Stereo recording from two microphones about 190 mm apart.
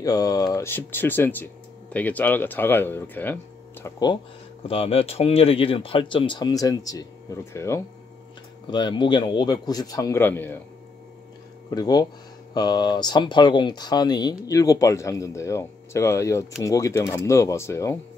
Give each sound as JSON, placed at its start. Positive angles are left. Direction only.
{"t": 0.0, "sound": "speech", "side_deg": 20}
{"t": 3.8, "sound": "speech", "side_deg": 20}
{"t": 11.7, "sound": "speech", "side_deg": 20}